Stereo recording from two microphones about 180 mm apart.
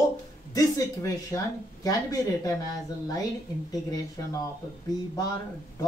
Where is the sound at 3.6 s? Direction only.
20° left (ahead or behind).